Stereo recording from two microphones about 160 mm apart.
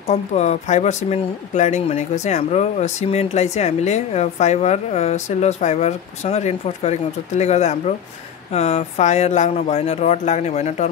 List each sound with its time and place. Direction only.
0.1 s speech: 45° left (ahead or behind)